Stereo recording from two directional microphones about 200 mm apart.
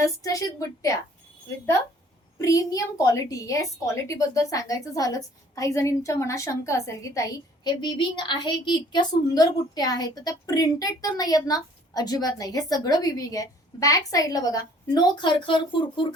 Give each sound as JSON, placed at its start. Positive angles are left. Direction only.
{"t": 0.0, "sound": "a woman's voice", "side_deg": 15}
{"t": 2.4, "sound": "a woman's voice", "side_deg": 15}